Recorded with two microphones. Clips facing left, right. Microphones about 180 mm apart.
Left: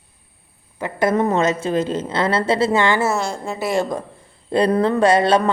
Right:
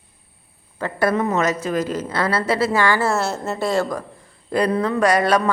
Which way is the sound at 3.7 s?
20° left (ahead or behind).